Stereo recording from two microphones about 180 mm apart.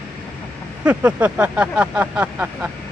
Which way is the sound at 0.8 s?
5° right (ahead or behind).